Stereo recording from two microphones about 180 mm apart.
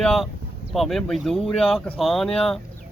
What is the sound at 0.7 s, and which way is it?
Speech, centre (ahead or behind).